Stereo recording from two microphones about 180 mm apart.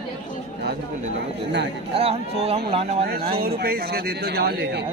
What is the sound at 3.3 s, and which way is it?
A man's voice, 60° right (ahead or behind).